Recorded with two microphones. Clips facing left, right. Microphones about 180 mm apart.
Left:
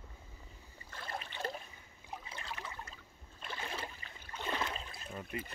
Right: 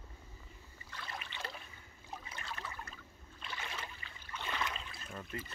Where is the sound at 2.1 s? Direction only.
15° left (ahead or behind).